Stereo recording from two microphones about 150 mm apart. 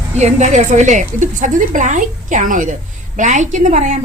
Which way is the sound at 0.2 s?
50° right (ahead or behind).